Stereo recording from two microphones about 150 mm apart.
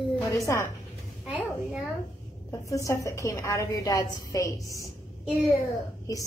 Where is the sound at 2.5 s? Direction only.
20° left (ahead or behind).